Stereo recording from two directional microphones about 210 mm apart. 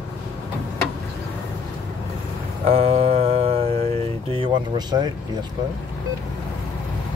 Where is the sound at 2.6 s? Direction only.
30° right (ahead or behind).